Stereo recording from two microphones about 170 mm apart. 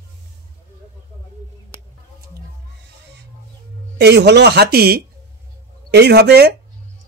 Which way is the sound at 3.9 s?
85° right.